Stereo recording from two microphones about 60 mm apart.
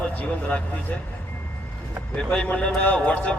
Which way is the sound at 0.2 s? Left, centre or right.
Left.